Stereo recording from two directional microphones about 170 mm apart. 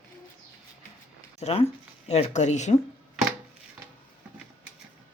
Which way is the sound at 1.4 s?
40° left (ahead or behind).